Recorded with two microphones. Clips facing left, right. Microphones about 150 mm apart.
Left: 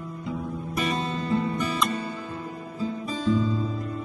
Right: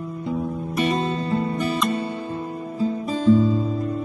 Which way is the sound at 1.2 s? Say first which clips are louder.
Right 2 dB; 30° right (ahead or behind).